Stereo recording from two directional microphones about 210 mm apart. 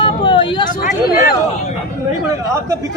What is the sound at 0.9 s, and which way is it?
Speech, 35° left (ahead or behind).